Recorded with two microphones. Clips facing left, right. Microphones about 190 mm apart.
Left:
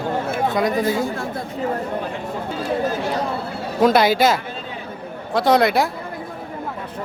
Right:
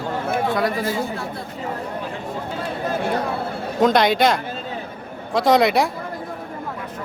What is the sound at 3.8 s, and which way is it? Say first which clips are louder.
Speech: left 1 dB; 5° left (ahead or behind).